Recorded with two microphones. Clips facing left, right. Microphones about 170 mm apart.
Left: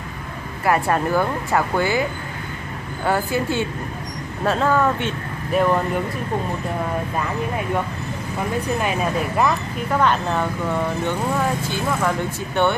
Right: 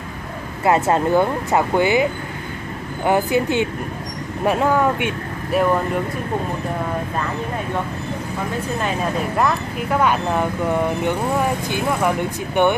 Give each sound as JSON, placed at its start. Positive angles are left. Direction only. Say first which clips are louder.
{"t": 0.7, "sound": "speech", "louder": "right 3 dB", "side_deg": -20}
{"t": 3.1, "sound": "speech", "louder": "right 3 dB", "side_deg": -20}
{"t": 9.4, "sound": "speech", "louder": "even", "side_deg": -5}
{"t": 12.6, "sound": "speech", "louder": "right 3 dB", "side_deg": -15}